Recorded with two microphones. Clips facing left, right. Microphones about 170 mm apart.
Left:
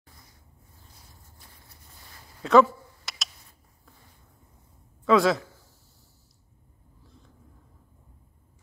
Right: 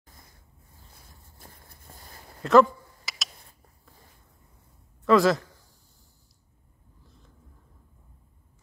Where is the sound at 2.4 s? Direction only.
Centre (ahead or behind).